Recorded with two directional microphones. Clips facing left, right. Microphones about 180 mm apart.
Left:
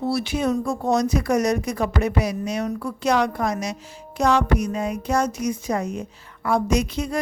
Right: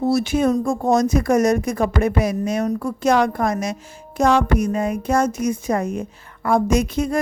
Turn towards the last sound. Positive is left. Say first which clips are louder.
# right 4 dB
turn(degrees=-50)  # may be behind; listen again after turning